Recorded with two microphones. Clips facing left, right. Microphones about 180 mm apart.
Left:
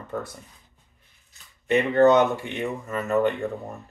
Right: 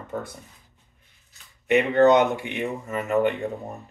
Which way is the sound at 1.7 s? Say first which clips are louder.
Even; 15° right (ahead or behind).